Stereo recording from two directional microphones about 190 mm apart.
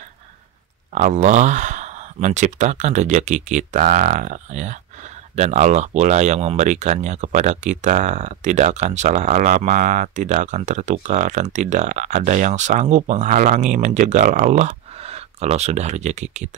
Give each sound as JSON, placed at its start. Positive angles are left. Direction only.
{"t": 0.9, "sound": "speech", "side_deg": -40}